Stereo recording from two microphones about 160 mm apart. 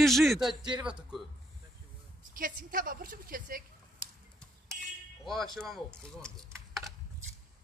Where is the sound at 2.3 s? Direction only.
60° right (ahead or behind).